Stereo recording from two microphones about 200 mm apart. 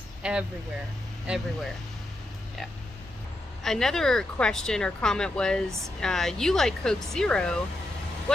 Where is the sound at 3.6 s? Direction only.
Centre (ahead or behind).